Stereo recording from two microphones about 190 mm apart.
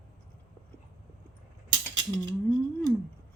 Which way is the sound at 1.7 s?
20° right (ahead or behind).